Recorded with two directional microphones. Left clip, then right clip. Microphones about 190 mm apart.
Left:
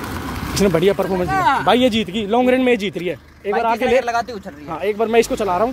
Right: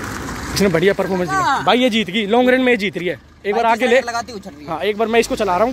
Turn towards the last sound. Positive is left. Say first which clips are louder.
# right 2 dB
turn(degrees=-10)  # may be behind; listen again after turning